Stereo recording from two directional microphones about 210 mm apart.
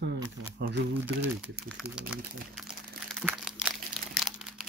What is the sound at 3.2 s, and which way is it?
Crumpling, 5° right (ahead or behind).